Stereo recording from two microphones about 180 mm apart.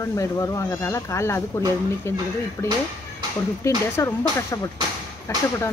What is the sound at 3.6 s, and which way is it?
Speech, 15° left (ahead or behind).